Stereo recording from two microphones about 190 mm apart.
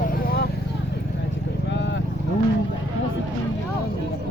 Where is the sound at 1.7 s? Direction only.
70° left (ahead or behind).